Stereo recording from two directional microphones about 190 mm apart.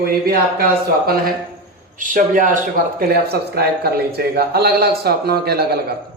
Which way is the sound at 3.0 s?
55° right (ahead or behind).